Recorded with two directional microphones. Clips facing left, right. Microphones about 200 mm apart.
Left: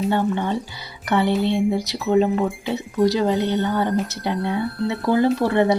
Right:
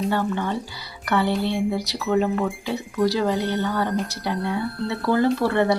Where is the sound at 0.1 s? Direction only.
20° left (ahead or behind).